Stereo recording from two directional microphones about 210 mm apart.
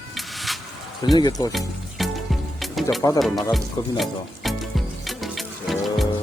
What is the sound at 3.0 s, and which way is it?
Speech, 15° left (ahead or behind).